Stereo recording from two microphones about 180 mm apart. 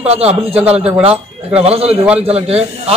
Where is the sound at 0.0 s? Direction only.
35° right (ahead or behind).